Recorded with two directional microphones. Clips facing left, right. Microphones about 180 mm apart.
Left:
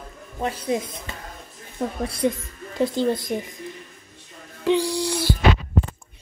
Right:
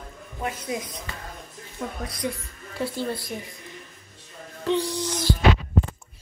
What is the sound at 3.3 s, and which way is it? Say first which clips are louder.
Speech: left 7 dB; 25° left (ahead or behind).